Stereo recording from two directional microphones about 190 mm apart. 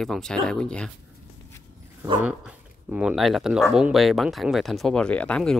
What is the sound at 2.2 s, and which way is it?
Speech, 5° right (ahead or behind).